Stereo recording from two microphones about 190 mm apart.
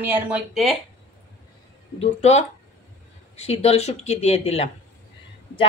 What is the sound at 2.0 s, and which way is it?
Speech, 35° left (ahead or behind).